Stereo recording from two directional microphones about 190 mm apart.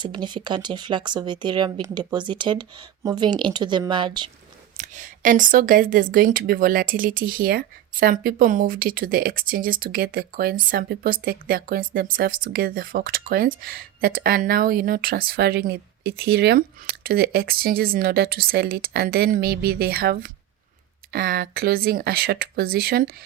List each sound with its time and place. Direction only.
0.0 s speech: 25° right (ahead or behind)
4.8 s speech: 45° right (ahead or behind)